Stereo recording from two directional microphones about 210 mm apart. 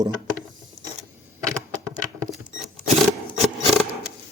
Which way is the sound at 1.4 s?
15° right (ahead or behind).